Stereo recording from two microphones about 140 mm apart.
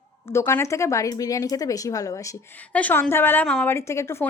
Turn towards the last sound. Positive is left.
turn(degrees=20)  # may be behind; listen again after turning